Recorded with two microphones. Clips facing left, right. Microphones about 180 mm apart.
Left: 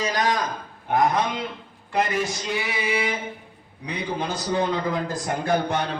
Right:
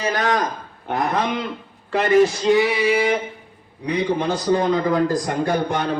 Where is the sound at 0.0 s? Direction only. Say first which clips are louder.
Right 3 dB; 60° right (ahead or behind).